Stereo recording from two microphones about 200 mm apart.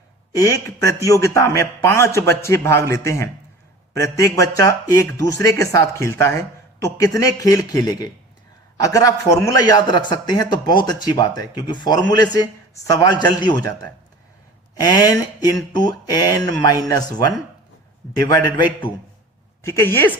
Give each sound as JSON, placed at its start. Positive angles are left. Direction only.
{"t": 0.3, "sound": "a man's voice", "side_deg": 15}
{"t": 14.8, "sound": "a man's voice", "side_deg": 20}